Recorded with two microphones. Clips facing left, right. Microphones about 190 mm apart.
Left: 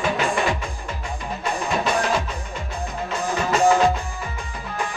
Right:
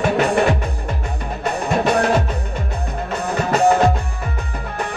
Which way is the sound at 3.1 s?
65° right (ahead or behind).